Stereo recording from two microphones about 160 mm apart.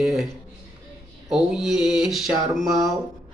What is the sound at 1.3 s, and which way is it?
Speech, centre (ahead or behind).